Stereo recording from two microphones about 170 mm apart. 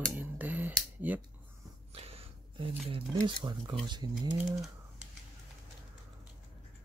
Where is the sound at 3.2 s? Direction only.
25° right (ahead or behind).